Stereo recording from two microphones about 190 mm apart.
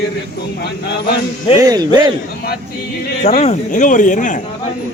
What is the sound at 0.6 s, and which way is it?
Speech, 60° left (ahead or behind).